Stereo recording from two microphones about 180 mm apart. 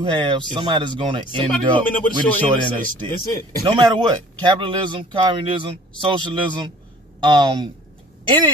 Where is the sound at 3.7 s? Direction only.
25° right (ahead or behind).